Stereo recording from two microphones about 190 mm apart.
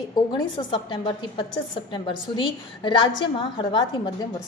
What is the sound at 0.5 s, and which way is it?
A woman's voice, 25° left (ahead or behind).